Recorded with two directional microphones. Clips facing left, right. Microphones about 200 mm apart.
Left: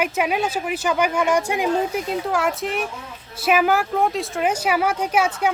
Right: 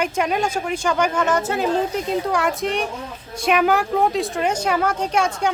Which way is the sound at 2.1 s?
Centre (ahead or behind).